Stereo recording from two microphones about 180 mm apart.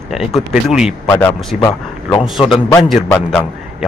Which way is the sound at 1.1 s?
10° left (ahead or behind).